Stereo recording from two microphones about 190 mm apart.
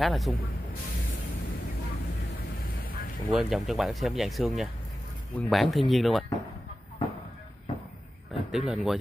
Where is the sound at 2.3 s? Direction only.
50° left (ahead or behind).